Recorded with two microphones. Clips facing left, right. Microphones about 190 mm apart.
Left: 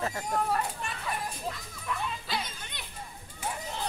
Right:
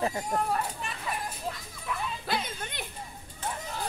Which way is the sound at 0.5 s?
Centre (ahead or behind).